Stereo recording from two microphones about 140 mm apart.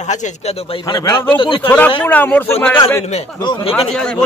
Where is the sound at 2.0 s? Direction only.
15° left (ahead or behind).